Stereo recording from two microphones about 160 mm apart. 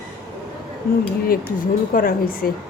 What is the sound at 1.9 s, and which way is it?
Speech, 65° left (ahead or behind).